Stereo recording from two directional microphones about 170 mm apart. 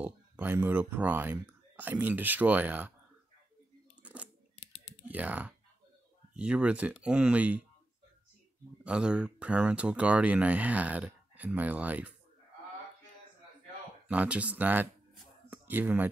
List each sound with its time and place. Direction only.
0.0 s speech: 10° right (ahead or behind)
4.0 s scissors: 10° right (ahead or behind)
4.6 s clicking: 40° left (ahead or behind)
5.0 s speech: 10° right (ahead or behind)
8.8 s speech: 5° right (ahead or behind)
14.0 s speech: 10° right (ahead or behind)